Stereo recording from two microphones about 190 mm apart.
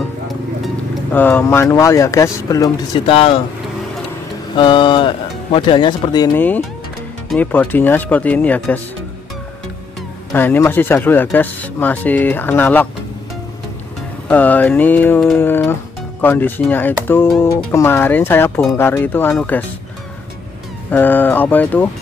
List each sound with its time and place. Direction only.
1.1 s speech: 10° left (ahead or behind); by 3.3 s 30° left (ahead or behind)
4.6 s speech: 25° left (ahead or behind)
6.3 s speech: 10° left (ahead or behind)
10.3 s speech: 10° left (ahead or behind)
14.2 s speech: 10° left (ahead or behind)
20.9 s speech: 10° left (ahead or behind)